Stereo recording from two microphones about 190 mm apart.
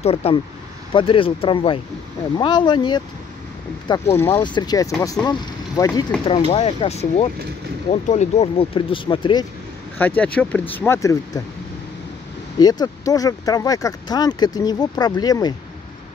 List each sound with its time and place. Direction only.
0.0 s speech: 30° left (ahead or behind)
6.2 s speech: 30° left (ahead or behind)
9.9 s speech: 10° left (ahead or behind)
12.5 s speech: 20° left (ahead or behind)